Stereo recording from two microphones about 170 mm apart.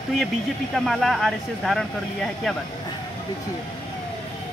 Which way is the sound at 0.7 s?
Centre (ahead or behind).